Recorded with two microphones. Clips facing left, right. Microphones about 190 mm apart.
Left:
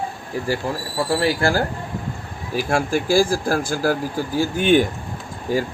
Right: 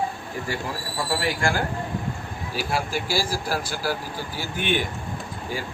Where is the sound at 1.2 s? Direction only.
35° left (ahead or behind).